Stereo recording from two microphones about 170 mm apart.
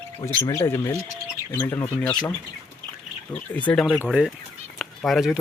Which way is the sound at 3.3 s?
10° left (ahead or behind).